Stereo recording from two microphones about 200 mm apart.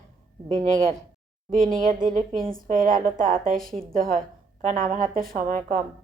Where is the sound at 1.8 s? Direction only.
40° right (ahead or behind).